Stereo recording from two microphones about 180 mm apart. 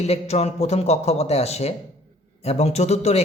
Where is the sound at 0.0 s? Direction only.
35° left (ahead or behind).